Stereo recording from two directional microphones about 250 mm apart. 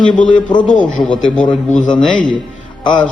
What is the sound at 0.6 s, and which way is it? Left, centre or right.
Speech, left.